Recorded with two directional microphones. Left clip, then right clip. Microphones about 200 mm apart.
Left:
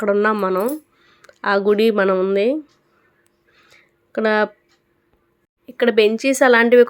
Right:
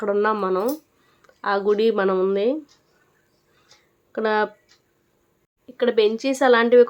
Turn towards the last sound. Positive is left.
turn(degrees=10)  # may be behind; listen again after turning